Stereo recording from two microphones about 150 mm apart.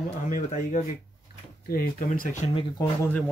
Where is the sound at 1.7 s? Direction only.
75° left (ahead or behind).